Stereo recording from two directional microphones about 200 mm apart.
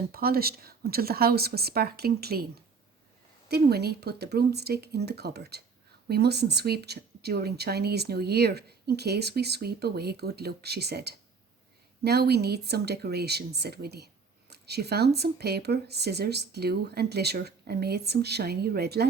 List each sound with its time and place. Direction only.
0.1 s a woman's voice: 50° right (ahead or behind)
3.5 s a woman's voice: 50° right (ahead or behind)